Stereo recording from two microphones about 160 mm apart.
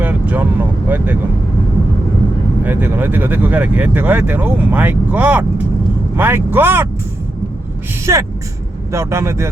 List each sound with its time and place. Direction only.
0.0 s vehicle: 10° right (ahead or behind)
2.6 s speech: 10° right (ahead or behind)
8.1 s speech: 20° right (ahead or behind)